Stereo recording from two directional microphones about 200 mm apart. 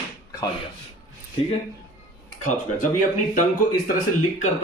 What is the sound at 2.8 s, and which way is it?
Speech, 40° left (ahead or behind).